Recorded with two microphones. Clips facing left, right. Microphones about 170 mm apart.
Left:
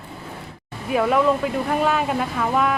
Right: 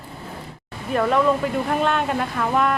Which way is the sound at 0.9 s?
5° left (ahead or behind).